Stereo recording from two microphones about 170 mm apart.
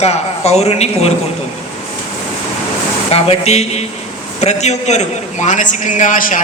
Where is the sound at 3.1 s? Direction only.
40° left (ahead or behind).